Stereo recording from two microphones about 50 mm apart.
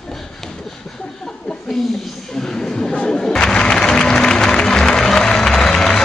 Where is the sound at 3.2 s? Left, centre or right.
Centre.